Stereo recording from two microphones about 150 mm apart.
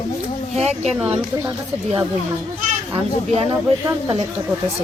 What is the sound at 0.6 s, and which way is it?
Speech, 45° right (ahead or behind).